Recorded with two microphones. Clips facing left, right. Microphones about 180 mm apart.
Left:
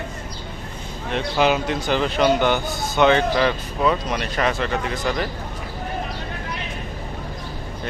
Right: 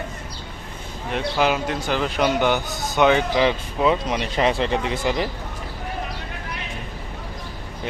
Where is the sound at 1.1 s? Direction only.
5° right (ahead or behind).